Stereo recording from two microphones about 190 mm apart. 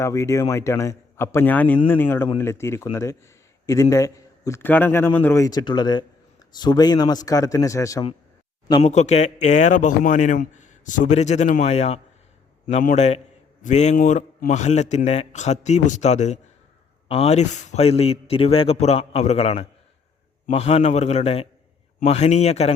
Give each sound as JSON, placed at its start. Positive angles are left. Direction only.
{"t": 0.0, "sound": "a man's voice", "side_deg": 15}
{"t": 8.6, "sound": "a man's voice", "side_deg": 35}